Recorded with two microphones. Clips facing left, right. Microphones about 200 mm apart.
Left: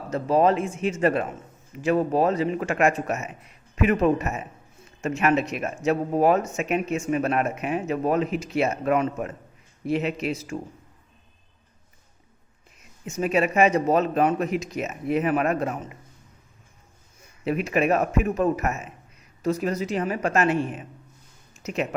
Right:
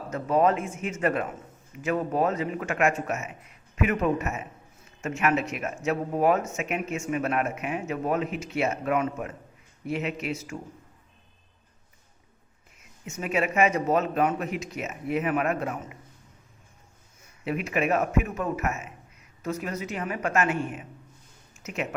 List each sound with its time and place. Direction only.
0.1 s speech: 30° left (ahead or behind)
13.1 s speech: 35° left (ahead or behind)
17.4 s speech: 35° left (ahead or behind)